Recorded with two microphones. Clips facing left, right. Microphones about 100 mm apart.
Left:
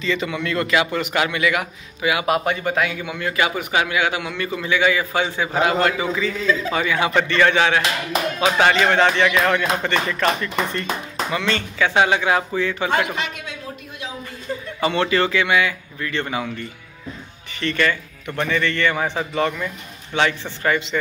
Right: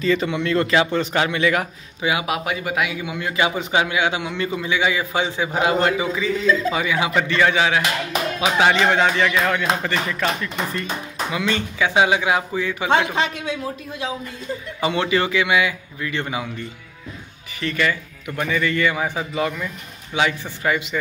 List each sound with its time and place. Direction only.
0.0 s a man's voice: 40° right (ahead or behind)
0.3 s a man's voice: 25° right (ahead or behind)
2.0 s speech: 20° right (ahead or behind)
2.2 s a man's voice: 5° right (ahead or behind); by 13.6 s 30° right (ahead or behind)
14.8 s a man's voice: 15° right (ahead or behind)